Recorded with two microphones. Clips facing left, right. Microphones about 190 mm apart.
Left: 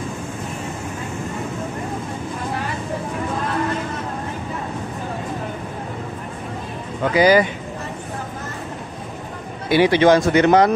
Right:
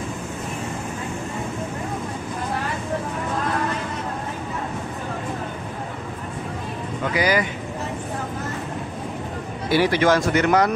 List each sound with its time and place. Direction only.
7.2 s speech: 30° left (ahead or behind)
9.7 s speech: 20° left (ahead or behind)